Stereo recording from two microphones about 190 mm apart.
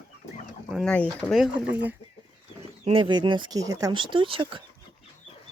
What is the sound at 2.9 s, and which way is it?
Speech, 25° right (ahead or behind).